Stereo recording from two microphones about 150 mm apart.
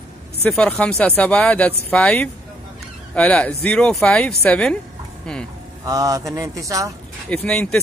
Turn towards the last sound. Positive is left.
turn(degrees=5)  # may be behind; listen again after turning